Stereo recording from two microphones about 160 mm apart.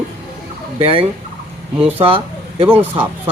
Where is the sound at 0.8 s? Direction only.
35° right (ahead or behind).